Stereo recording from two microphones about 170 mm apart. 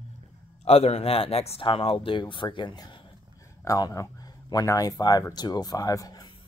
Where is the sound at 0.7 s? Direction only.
35° left (ahead or behind).